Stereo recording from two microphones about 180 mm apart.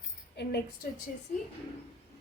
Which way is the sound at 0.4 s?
65° left (ahead or behind).